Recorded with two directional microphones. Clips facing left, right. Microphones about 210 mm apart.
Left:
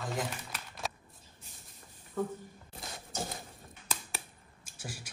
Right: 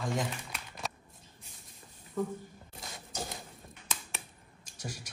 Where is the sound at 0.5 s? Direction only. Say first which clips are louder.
Left 1 dB; centre (ahead or behind).